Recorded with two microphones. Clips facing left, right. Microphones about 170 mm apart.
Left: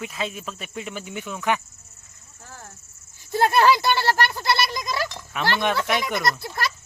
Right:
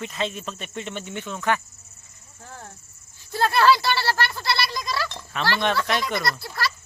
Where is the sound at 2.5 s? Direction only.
20° right (ahead or behind).